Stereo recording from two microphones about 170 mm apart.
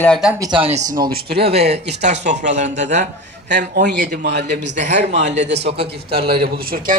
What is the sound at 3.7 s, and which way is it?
A man's voice, 80° right.